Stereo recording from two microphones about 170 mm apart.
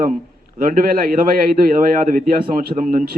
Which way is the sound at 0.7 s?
55° right (ahead or behind).